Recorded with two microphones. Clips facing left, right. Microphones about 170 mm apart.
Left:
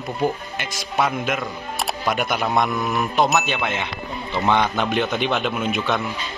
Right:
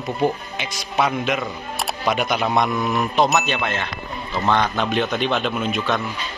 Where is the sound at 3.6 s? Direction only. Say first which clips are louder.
Even; 15° left (ahead or behind).